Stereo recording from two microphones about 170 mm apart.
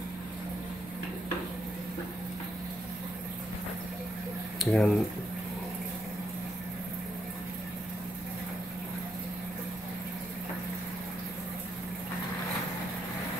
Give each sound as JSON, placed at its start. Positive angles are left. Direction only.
{"t": 4.6, "sound": "speech", "side_deg": 0}